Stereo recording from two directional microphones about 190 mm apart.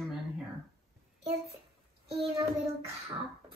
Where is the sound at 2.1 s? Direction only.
30° right (ahead or behind).